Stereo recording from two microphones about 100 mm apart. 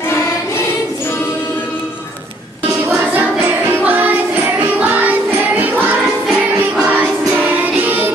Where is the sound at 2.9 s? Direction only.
15° right (ahead or behind).